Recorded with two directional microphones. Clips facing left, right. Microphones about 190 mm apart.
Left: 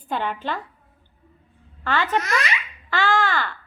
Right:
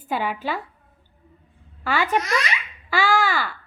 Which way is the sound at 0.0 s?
5° right (ahead or behind).